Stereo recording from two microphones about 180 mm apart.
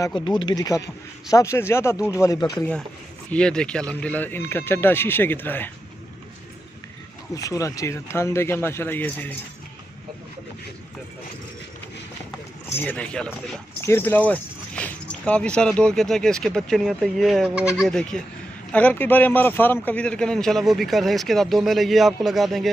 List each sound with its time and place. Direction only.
0.0 s speech: 25° left (ahead or behind)
3.3 s speech: 5° left (ahead or behind)
7.3 s speech: 20° left (ahead or behind)
12.7 s speech: 10° left (ahead or behind)